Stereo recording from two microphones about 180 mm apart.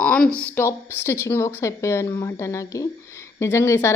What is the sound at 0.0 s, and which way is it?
A woman's voice, 5° left (ahead or behind).